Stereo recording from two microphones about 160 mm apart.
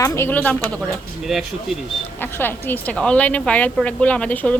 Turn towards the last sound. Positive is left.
turn(degrees=10)  # may be behind; listen again after turning